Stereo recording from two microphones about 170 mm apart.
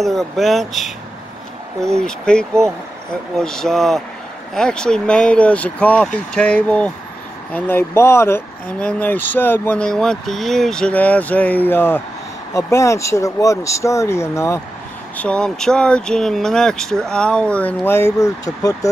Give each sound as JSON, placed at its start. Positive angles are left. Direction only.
{"t": 0.0, "sound": "speech", "side_deg": 0}
{"t": 15.1, "sound": "speech", "side_deg": 5}